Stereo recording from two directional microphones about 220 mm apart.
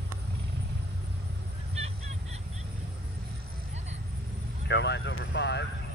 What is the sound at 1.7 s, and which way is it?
Fowl, 30° right (ahead or behind).